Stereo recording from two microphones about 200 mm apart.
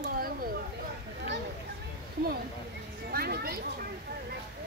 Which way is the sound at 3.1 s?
50° right (ahead or behind).